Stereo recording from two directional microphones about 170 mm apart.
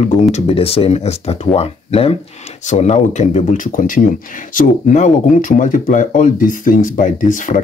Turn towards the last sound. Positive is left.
turn(degrees=50)  # may be behind; listen again after turning